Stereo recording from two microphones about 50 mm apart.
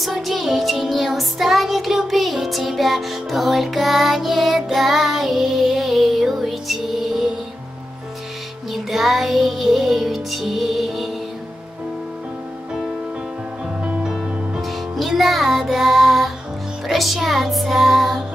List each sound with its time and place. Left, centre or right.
0.1 s music: centre
8.7 s music: centre
14.6 s music: centre